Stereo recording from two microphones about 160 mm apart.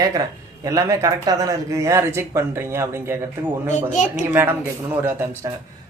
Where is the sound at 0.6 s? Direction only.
20° right (ahead or behind).